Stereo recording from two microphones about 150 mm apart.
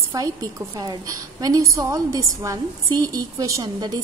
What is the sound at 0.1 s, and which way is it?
A woman's voice, 25° right (ahead or behind).